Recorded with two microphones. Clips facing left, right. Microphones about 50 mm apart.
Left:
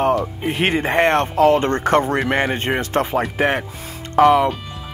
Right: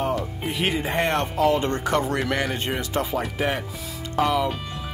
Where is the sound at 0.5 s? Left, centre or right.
Left.